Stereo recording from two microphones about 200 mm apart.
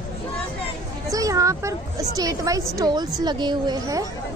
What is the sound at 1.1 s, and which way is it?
A woman's voice, 15° right (ahead or behind).